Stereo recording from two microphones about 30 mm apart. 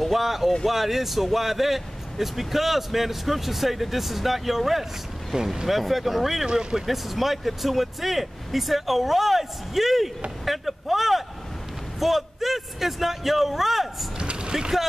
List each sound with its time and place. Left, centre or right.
0.0 s speech: centre
5.7 s speech: centre
6.4 s speech: right
6.9 s speech: centre
14.1 s vehicle: right